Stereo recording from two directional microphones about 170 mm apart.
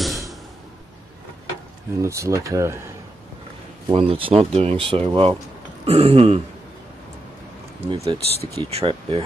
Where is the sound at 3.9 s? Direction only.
30° right (ahead or behind).